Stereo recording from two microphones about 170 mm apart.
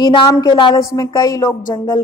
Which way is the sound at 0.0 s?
25° left (ahead or behind).